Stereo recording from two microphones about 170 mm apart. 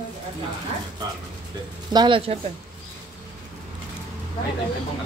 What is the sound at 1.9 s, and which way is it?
Speech, 30° right (ahead or behind).